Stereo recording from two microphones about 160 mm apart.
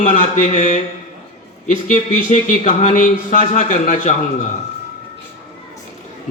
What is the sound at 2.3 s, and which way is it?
A man's voice, 50° left (ahead or behind).